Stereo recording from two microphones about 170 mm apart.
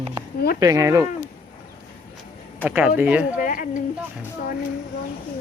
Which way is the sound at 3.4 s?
55° left (ahead or behind).